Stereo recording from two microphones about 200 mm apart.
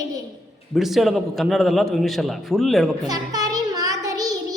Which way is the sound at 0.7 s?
Centre (ahead or behind).